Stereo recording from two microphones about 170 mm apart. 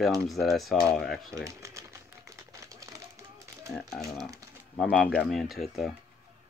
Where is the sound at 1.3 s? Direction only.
20° right (ahead or behind).